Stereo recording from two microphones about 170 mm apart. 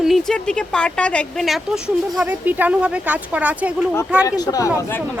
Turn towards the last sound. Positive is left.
turn(degrees=20)  # may be behind; listen again after turning